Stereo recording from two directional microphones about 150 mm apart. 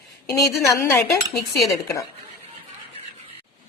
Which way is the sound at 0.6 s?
20° left (ahead or behind).